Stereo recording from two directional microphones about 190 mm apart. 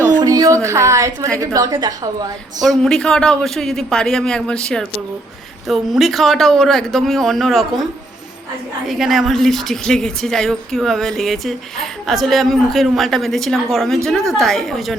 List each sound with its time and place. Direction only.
0.2 s a woman's voice: 20° right (ahead or behind)
2.6 s speech: centre (ahead or behind)
8.9 s speech: centre (ahead or behind)